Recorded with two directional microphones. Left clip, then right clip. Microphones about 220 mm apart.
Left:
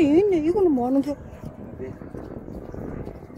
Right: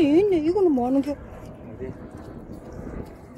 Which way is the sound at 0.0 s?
15° left (ahead or behind).